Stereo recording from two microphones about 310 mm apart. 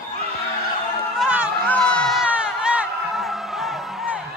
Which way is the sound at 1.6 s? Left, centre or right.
Centre.